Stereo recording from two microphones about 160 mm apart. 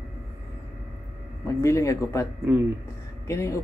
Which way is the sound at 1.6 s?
20° left (ahead or behind).